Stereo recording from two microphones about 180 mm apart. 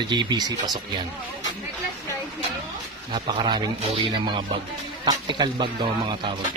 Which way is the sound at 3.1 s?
25° right (ahead or behind).